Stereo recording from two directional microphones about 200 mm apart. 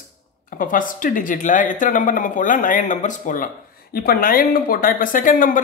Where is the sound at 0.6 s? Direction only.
45° left (ahead or behind).